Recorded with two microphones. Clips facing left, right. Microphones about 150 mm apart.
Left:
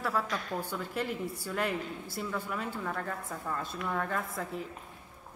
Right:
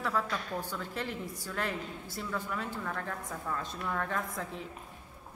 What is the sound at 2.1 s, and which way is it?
A woman's voice, 10° left (ahead or behind).